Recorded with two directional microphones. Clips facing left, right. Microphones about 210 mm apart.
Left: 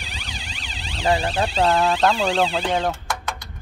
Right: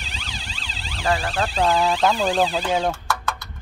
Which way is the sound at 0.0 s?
15° left (ahead or behind).